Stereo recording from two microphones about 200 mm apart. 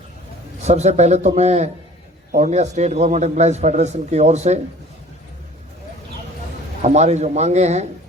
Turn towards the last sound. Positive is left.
turn(degrees=-35)  # may be behind; listen again after turning